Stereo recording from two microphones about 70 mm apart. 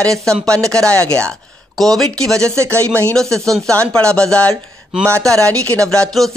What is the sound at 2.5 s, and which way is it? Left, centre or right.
Speech, right.